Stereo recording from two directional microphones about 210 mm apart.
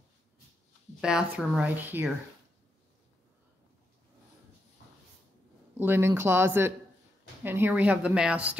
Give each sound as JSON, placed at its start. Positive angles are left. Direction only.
{"t": 1.0, "sound": "speech", "side_deg": -5}
{"t": 5.8, "sound": "speech", "side_deg": -10}